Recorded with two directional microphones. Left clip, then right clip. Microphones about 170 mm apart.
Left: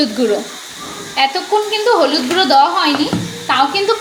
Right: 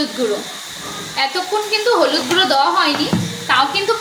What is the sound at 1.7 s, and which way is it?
Stir, 30° left (ahead or behind).